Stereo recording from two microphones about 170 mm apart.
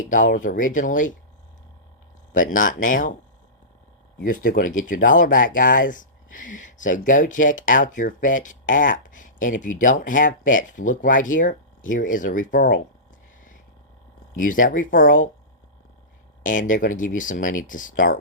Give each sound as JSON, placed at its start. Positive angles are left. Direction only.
{"t": 0.1, "sound": "speech", "side_deg": 50}
{"t": 2.3, "sound": "speech", "side_deg": 50}
{"t": 4.2, "sound": "speech", "side_deg": 55}
{"t": 14.3, "sound": "speech", "side_deg": 50}
{"t": 16.4, "sound": "speech", "side_deg": 50}